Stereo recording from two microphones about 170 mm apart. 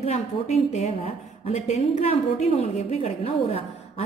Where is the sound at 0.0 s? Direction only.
40° left (ahead or behind).